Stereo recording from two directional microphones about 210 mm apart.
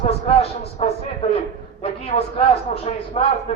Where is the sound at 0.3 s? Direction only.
30° left (ahead or behind).